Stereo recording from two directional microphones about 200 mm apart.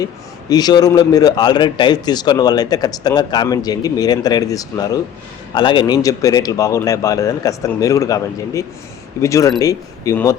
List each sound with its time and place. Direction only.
0.0 s a man's voice: 20° left (ahead or behind)